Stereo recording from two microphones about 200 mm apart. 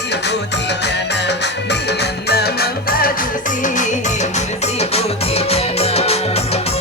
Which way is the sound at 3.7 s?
35° left (ahead or behind).